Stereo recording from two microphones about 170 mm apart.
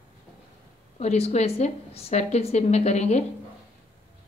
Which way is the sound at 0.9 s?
40° left (ahead or behind).